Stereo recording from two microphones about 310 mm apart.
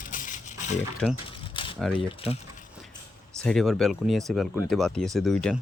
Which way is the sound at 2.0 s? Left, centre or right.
Centre.